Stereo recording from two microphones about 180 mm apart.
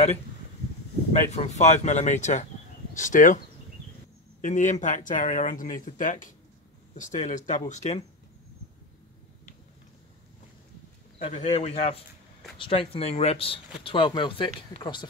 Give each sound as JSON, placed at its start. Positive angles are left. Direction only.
{"t": 1.1, "sound": "speech", "side_deg": 40}
{"t": 4.4, "sound": "speech", "side_deg": 45}
{"t": 11.1, "sound": "speech", "side_deg": 40}